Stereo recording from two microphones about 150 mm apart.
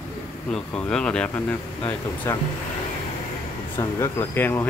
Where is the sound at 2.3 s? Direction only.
20° left (ahead or behind).